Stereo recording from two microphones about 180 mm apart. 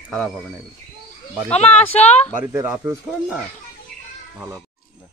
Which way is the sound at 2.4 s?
15° right (ahead or behind).